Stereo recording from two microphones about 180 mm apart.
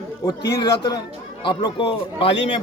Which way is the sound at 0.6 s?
25° left (ahead or behind).